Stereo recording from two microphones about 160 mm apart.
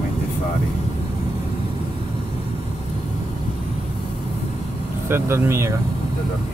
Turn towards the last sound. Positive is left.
turn(degrees=-15)  # may be behind; listen again after turning